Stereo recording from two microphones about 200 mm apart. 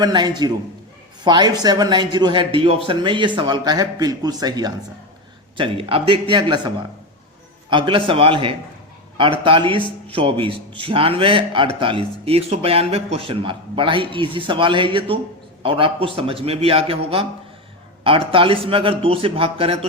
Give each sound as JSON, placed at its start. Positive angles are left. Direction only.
{"t": 0.0, "sound": "a man's voice", "side_deg": -20}
{"t": 7.7, "sound": "a man's voice", "side_deg": -25}